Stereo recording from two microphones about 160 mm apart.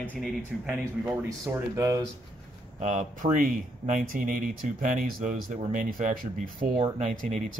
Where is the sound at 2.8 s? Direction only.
50° right (ahead or behind).